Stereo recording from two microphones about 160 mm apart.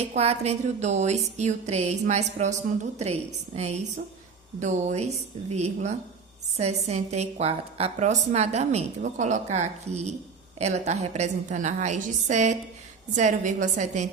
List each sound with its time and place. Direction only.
0.2 s a woman's voice: 40° right (ahead or behind)